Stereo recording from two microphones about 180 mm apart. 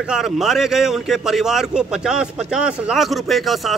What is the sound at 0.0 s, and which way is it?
A man's voice, 5° right (ahead or behind).